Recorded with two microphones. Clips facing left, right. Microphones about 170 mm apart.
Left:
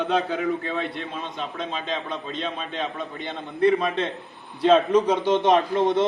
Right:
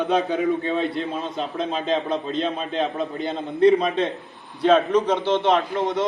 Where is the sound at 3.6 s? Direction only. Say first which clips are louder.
Right 3 dB; 20° right (ahead or behind).